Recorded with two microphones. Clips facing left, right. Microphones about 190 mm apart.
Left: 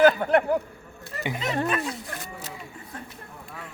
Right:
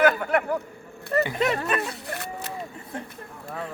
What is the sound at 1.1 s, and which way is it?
Speech, 60° right (ahead or behind).